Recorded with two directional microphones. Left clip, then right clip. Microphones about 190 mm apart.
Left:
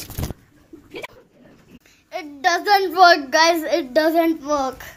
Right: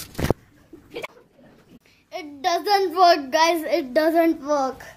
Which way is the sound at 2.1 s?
15° right (ahead or behind).